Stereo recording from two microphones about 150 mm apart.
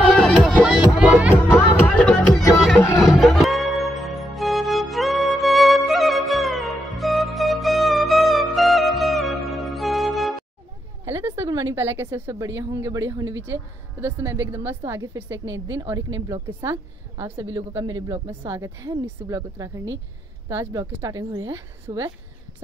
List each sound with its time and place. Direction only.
0.2 s music: centre (ahead or behind)
1.3 s music: 10° left (ahead or behind)
3.0 s music: centre (ahead or behind)
11.1 s a woman's voice: 20° right (ahead or behind)